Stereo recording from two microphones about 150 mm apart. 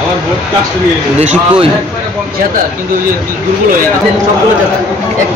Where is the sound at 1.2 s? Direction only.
50° right (ahead or behind).